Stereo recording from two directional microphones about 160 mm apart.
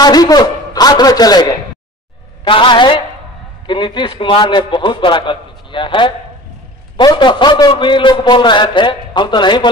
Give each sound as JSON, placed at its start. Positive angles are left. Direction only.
{"t": 0.0, "sound": "a man's voice", "side_deg": 25}